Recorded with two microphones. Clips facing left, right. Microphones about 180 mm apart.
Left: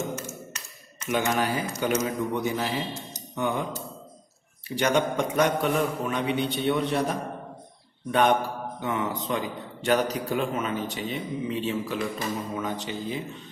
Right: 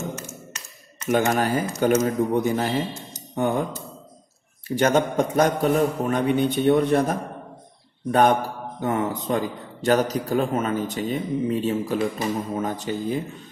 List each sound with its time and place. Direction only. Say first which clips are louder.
1.0 s a man's voice: right 5 dB; 45° right (ahead or behind)
4.6 s a man's voice: right 4 dB; 45° right (ahead or behind)